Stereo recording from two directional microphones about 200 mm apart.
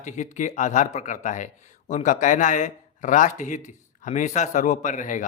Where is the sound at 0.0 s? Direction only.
35° left (ahead or behind).